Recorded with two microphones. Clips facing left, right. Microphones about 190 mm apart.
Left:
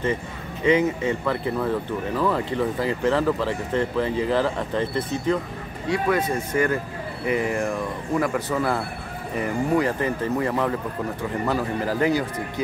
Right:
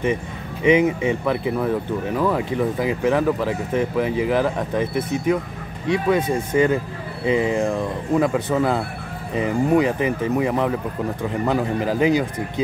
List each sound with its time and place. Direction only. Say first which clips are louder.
0.7 s speech: right 3 dB; 15° right (ahead or behind)